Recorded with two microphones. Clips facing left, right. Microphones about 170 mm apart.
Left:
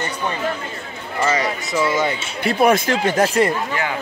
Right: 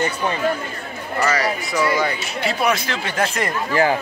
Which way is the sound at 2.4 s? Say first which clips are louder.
Left 5 dB; 50° left (ahead or behind).